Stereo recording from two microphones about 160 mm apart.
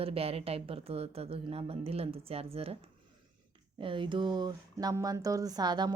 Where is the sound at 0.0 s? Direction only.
40° right (ahead or behind).